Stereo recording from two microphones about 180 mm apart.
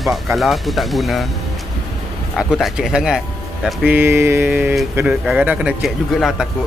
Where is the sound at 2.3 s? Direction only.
Centre (ahead or behind).